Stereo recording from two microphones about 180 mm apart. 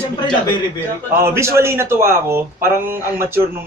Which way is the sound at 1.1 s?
15° right (ahead or behind).